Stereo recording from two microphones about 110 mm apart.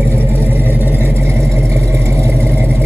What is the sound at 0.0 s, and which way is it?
Vehicle, 20° right (ahead or behind).